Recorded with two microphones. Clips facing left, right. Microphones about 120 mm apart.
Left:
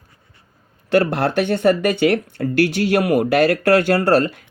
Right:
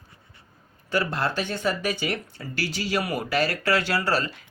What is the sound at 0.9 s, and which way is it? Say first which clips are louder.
Speech: left 9 dB; 65° left (ahead or behind).